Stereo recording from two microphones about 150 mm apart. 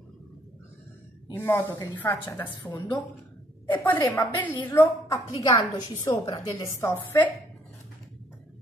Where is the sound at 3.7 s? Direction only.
10° left (ahead or behind).